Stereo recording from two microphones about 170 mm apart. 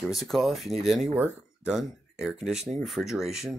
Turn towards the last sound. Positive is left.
turn(degrees=0)  # may be behind; listen again after turning